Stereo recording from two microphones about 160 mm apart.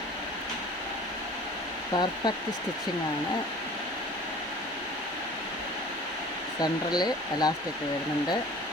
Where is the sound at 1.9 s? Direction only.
25° left (ahead or behind).